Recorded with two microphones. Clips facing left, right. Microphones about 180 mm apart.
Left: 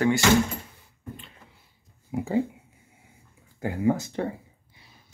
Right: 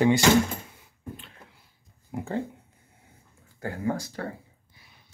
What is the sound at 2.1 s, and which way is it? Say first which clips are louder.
Speech: left 5 dB; 5° left (ahead or behind).